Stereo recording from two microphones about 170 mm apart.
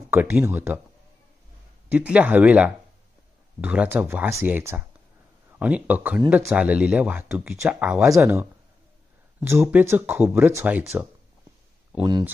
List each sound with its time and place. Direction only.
0.1 s speech: 10° right (ahead or behind)
1.9 s speech: 10° right (ahead or behind)
12.0 s speech: 25° right (ahead or behind)